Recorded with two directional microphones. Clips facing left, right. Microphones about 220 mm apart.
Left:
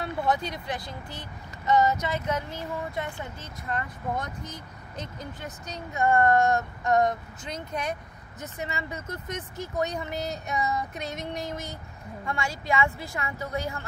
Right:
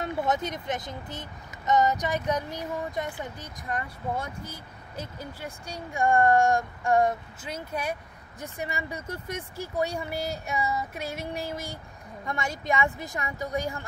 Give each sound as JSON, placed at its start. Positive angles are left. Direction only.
{"t": 0.0, "sound": "speech", "side_deg": -20}
{"t": 12.3, "sound": "speech", "side_deg": -20}